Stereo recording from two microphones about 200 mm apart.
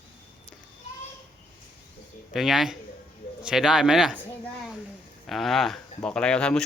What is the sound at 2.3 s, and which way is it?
Speech, centre (ahead or behind).